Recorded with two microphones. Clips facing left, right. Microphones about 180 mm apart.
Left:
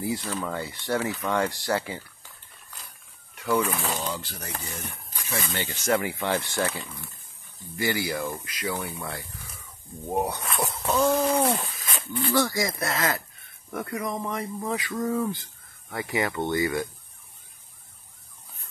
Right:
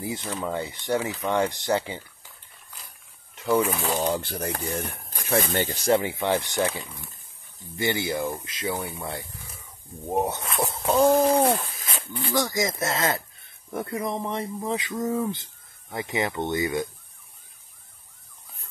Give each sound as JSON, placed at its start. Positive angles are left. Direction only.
{"t": 0.0, "sound": "speech", "side_deg": -20}
{"t": 3.3, "sound": "speech", "side_deg": -25}
{"t": 4.0, "sound": "speech", "side_deg": -55}
{"t": 5.6, "sound": "speech", "side_deg": -35}
{"t": 10.2, "sound": "speech", "side_deg": -25}
{"t": 11.5, "sound": "a sound", "side_deg": 0}
{"t": 12.3, "sound": "speech", "side_deg": -20}